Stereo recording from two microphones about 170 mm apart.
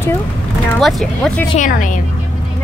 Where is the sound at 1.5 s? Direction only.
50° left (ahead or behind).